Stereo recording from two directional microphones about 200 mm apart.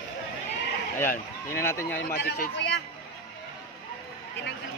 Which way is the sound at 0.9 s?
10° left (ahead or behind).